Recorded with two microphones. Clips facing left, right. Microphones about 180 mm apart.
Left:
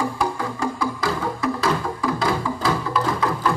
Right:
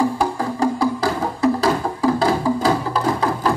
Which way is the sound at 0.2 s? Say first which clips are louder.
Right 4 dB; 35° right (ahead or behind).